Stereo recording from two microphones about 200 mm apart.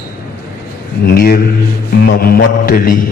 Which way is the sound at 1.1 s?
50° left (ahead or behind).